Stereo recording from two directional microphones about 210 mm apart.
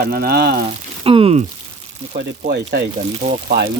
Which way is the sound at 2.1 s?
50° right (ahead or behind).